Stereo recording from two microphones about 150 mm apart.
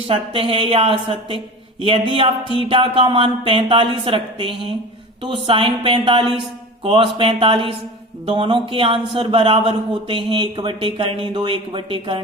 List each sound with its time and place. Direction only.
0.1 s speech: 35° right (ahead or behind)